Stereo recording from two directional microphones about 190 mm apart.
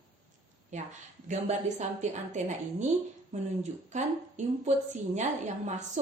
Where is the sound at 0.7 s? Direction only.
40° right (ahead or behind).